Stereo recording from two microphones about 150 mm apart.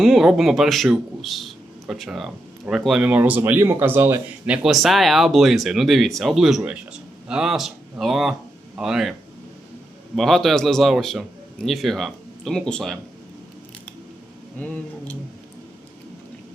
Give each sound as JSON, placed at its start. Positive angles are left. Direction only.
{"t": 0.0, "sound": "a man's voice", "side_deg": 0}
{"t": 10.2, "sound": "a man's voice", "side_deg": 0}
{"t": 14.6, "sound": "speech", "side_deg": 10}